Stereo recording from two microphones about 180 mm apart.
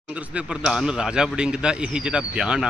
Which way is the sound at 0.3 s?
5° right (ahead or behind).